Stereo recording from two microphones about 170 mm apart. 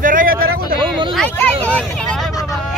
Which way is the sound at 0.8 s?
30° right (ahead or behind).